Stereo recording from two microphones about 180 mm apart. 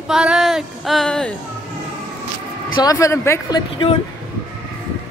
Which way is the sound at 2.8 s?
20° left (ahead or behind).